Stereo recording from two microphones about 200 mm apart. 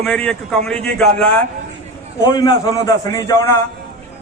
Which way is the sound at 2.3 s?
20° left (ahead or behind).